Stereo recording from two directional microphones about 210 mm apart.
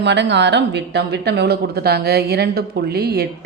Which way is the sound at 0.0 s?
55° right (ahead or behind).